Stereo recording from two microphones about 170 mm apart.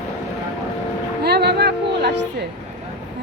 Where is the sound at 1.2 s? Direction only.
75° right (ahead or behind).